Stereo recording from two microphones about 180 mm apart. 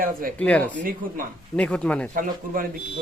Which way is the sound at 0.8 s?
50° right (ahead or behind).